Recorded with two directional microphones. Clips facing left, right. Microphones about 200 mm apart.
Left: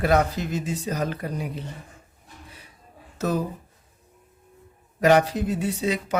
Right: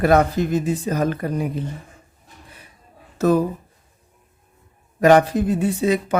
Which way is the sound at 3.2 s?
60° right (ahead or behind).